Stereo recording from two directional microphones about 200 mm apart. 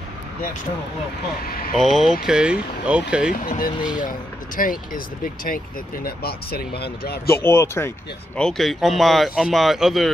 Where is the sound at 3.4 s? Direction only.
45° left (ahead or behind).